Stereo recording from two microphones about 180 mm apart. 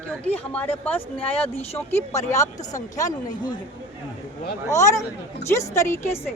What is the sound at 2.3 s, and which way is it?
Speech, 20° left (ahead or behind).